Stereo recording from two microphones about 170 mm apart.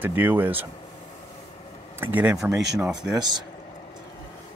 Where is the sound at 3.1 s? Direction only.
25° right (ahead or behind).